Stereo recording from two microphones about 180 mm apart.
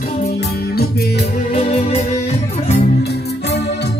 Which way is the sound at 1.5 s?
35° left (ahead or behind).